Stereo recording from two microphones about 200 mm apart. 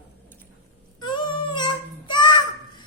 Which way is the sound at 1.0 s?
20° left (ahead or behind).